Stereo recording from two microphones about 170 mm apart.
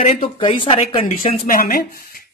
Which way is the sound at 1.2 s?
55° left (ahead or behind).